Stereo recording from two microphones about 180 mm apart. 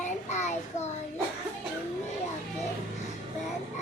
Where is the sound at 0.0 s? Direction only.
40° left (ahead or behind).